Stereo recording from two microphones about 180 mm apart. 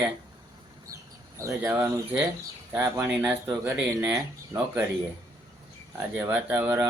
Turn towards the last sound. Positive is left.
turn(degrees=-10)  # may be behind; listen again after turning